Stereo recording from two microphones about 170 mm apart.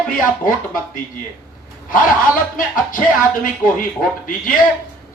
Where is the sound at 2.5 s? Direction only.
55° left (ahead or behind).